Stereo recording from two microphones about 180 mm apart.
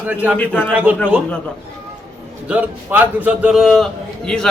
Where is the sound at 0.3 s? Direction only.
10° left (ahead or behind).